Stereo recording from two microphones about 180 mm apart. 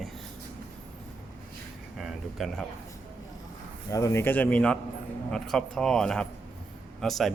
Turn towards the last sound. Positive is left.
turn(degrees=0)  # may be behind; listen again after turning